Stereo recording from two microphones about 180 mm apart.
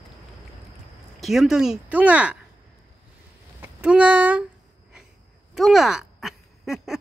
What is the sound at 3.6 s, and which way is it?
Speech, 5° right (ahead or behind).